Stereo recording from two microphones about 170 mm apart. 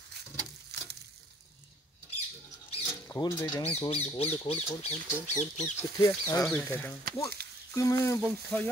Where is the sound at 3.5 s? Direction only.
30° left (ahead or behind); by 5.7 s 45° left (ahead or behind).